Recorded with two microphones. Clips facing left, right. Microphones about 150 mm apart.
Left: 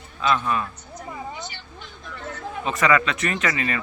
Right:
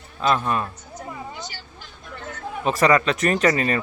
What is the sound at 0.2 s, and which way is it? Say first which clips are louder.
Speech: right 1 dB; 40° right (ahead or behind).